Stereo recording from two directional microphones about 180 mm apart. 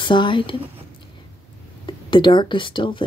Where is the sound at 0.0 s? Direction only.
25° left (ahead or behind).